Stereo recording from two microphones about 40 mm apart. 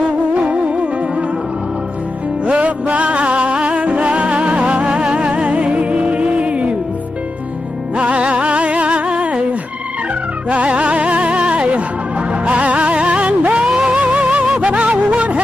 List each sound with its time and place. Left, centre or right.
0.3 s music: right
2.4 s music: right
8.0 s music: right
10.5 s music: right
13.7 s music: centre
13.9 s music: right